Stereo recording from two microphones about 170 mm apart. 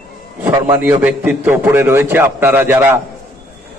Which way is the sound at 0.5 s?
10° right (ahead or behind).